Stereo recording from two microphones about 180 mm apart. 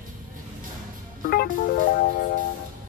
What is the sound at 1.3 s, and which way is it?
Music, 60° left (ahead or behind).